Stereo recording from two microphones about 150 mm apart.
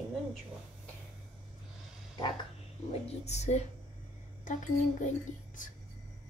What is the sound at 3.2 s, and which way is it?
Speech, 50° left (ahead or behind).